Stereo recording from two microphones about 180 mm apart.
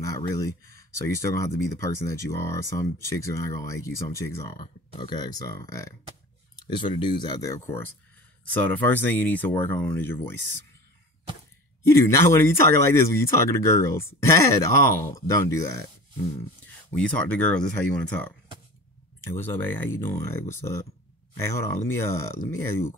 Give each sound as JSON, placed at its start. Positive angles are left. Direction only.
{"t": 0.0, "sound": "a sound", "side_deg": 15}
{"t": 0.9, "sound": "speech", "side_deg": 15}
{"t": 4.6, "sound": "speech", "side_deg": 25}
{"t": 11.8, "sound": "speech", "side_deg": 15}
{"t": 16.9, "sound": "speech", "side_deg": 10}